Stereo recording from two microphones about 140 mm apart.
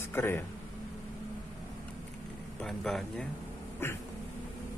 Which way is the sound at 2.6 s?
5° left (ahead or behind).